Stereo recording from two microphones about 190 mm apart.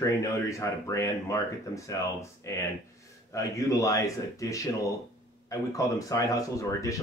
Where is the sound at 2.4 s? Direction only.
15° left (ahead or behind).